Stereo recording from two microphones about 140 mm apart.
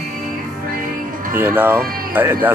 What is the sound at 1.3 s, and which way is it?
Speech, 15° right (ahead or behind).